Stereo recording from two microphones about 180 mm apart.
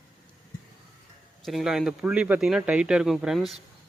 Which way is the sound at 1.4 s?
Centre (ahead or behind).